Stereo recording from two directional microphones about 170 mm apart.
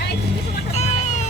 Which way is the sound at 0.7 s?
45° left (ahead or behind).